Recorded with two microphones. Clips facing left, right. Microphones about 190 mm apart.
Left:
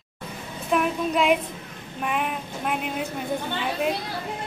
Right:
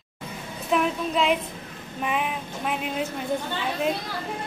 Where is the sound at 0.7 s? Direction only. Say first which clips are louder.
Left 1 dB; 5° left (ahead or behind).